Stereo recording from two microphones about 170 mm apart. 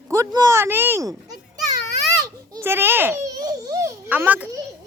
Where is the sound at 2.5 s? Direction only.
15° right (ahead or behind).